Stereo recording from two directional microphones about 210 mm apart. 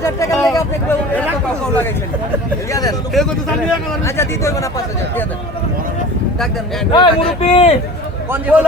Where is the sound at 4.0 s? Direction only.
15° left (ahead or behind).